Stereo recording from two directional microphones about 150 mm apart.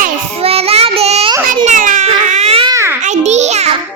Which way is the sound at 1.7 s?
55° right (ahead or behind).